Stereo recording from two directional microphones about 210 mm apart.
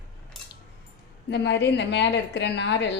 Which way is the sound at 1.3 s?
55° left (ahead or behind).